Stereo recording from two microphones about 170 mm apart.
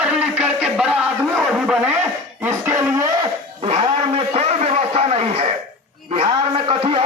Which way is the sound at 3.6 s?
30° right (ahead or behind).